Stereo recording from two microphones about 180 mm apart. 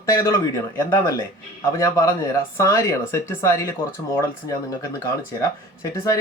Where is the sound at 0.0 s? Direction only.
15° left (ahead or behind).